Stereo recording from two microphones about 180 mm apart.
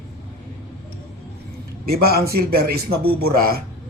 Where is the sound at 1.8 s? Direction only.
55° right (ahead or behind).